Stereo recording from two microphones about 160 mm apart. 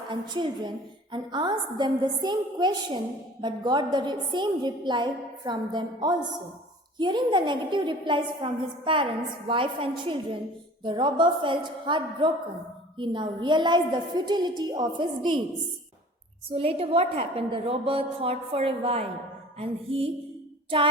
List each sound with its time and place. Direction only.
0.1 s a woman's voice: 30° right (ahead or behind)
16.6 s a woman's voice: 35° right (ahead or behind)
20.7 s child singing: 35° right (ahead or behind)